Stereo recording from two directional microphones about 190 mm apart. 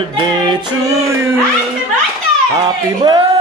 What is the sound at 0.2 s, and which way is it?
Music, 25° right (ahead or behind).